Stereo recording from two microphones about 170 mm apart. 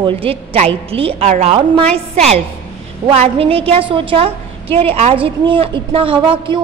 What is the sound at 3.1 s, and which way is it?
A woman's voice, 35° right (ahead or behind).